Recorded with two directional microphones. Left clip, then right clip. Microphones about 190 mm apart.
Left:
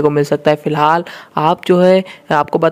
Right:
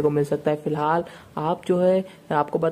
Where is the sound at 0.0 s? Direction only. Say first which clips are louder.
Left 9 dB; 25° left (ahead or behind).